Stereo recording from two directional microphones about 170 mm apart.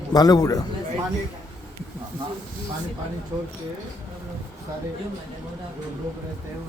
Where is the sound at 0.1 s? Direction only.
20° left (ahead or behind).